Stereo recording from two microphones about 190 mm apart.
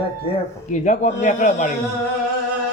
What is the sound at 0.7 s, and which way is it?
Speech, 40° left (ahead or behind).